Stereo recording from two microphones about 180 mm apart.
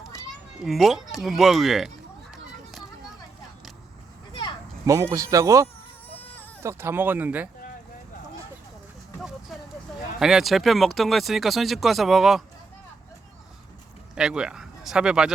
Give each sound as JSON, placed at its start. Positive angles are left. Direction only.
{"t": 0.6, "sound": "speech", "side_deg": 0}
{"t": 4.9, "sound": "speech", "side_deg": -15}
{"t": 9.1, "sound": "a sound", "side_deg": 0}
{"t": 10.2, "sound": "speech", "side_deg": 0}
{"t": 14.2, "sound": "speech", "side_deg": -5}